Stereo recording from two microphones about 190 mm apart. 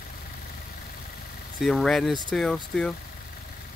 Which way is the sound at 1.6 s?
Centre (ahead or behind).